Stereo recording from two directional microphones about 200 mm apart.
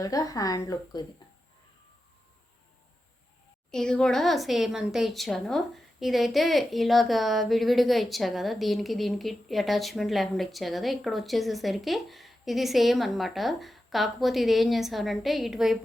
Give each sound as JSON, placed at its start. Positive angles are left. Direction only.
{"t": 0.0, "sound": "a woman's voice", "side_deg": 15}
{"t": 3.7, "sound": "speech", "side_deg": 5}